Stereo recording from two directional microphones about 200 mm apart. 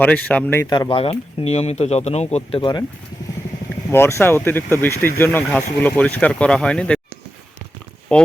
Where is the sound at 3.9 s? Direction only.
10° left (ahead or behind).